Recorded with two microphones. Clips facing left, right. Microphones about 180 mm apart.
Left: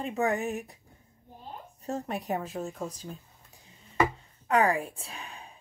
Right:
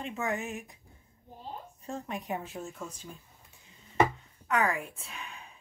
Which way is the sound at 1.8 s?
40° left (ahead or behind).